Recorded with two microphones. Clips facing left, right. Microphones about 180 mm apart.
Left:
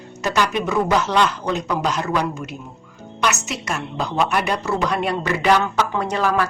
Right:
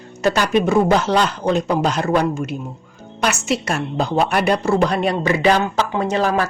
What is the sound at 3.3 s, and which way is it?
A man's voice, 30° right (ahead or behind).